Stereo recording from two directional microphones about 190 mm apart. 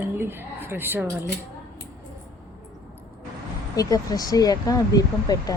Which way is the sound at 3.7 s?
20° left (ahead or behind).